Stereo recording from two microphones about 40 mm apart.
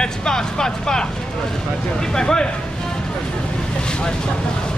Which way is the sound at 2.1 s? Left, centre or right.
Centre.